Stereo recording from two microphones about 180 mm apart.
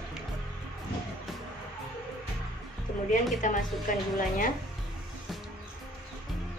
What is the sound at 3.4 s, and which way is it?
Speech, 45° left (ahead or behind).